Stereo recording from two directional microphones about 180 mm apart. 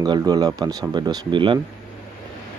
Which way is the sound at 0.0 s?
20° right (ahead or behind).